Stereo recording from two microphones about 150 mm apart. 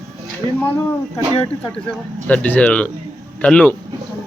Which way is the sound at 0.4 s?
35° right (ahead or behind).